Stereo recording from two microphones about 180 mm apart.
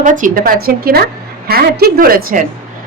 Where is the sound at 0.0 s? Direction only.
45° right (ahead or behind).